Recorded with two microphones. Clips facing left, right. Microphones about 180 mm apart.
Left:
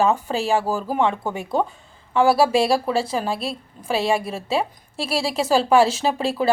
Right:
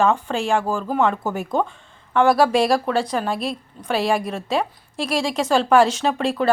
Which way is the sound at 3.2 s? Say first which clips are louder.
Right 1 dB; 30° left (ahead or behind).